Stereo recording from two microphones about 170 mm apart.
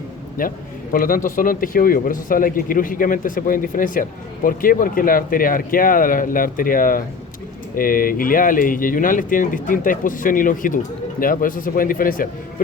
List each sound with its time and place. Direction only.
0.4 s a man's voice: 55° left (ahead or behind)